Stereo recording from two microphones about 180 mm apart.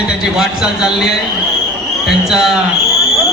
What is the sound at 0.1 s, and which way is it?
A man's voice, 5° right (ahead or behind).